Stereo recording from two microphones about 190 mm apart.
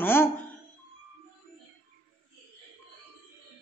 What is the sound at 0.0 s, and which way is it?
Music, 10° left (ahead or behind).